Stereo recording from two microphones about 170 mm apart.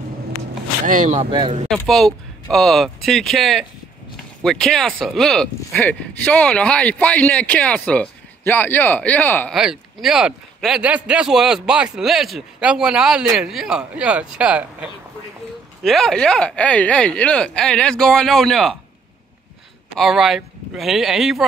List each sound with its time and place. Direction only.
0.8 s speech: 50° right (ahead or behind)
1.3 s speech: 30° right (ahead or behind)
1.9 s a man's voice: centre (ahead or behind)
9.5 s a man's voice: centre (ahead or behind)
20.0 s a man's voice: centre (ahead or behind)